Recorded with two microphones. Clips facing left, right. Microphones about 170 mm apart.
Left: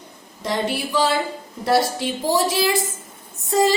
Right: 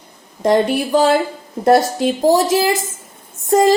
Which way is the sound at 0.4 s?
50° right (ahead or behind).